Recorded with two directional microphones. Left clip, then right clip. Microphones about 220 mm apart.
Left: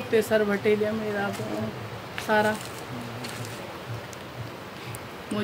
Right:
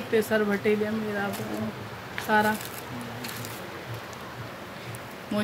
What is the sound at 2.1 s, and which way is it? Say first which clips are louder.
Speech: even; 5° left (ahead or behind).